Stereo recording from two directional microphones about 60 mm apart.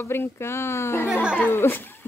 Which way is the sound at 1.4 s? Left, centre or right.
Left.